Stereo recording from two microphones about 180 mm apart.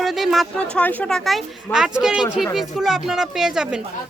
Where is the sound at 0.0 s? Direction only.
Centre (ahead or behind).